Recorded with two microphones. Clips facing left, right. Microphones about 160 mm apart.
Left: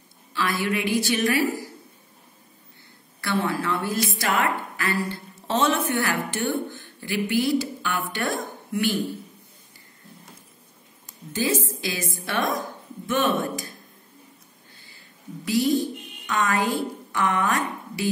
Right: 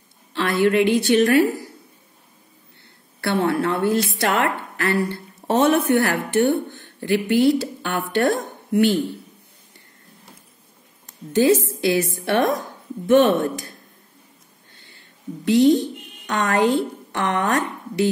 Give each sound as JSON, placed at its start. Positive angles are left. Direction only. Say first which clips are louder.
{"t": 0.3, "sound": "speech", "louder": "right 7 dB", "side_deg": -60}
{"t": 3.2, "sound": "a woman's voice", "louder": "right 5 dB", "side_deg": -65}
{"t": 11.3, "sound": "speech", "louder": "right 9 dB", "side_deg": -60}
{"t": 15.4, "sound": "speech", "louder": "right 7 dB", "side_deg": -65}